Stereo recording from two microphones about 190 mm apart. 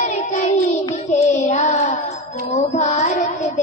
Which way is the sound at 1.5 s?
35° left (ahead or behind).